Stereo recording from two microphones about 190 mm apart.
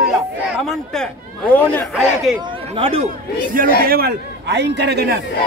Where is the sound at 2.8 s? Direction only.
30° right (ahead or behind).